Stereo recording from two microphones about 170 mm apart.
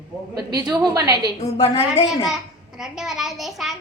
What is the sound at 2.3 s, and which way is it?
A child's voice, 5° right (ahead or behind).